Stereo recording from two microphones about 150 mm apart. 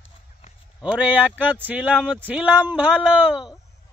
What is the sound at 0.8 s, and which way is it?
Speech, 10° right (ahead or behind).